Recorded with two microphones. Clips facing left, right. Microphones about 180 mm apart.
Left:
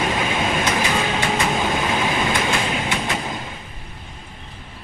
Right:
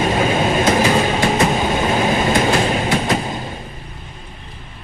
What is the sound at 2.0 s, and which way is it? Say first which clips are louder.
Train: right 5 dB; 40° right (ahead or behind).